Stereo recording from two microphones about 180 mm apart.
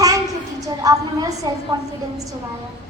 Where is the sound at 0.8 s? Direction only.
20° right (ahead or behind).